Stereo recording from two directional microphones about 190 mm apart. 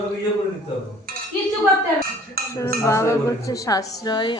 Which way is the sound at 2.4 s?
55° right (ahead or behind).